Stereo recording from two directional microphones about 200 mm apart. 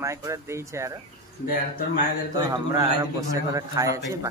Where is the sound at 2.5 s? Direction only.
15° right (ahead or behind).